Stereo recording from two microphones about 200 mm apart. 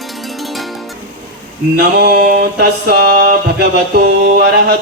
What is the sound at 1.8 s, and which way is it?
Mantra, 55° right (ahead or behind).